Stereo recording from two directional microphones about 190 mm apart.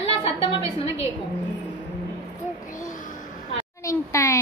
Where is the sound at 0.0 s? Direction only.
30° left (ahead or behind).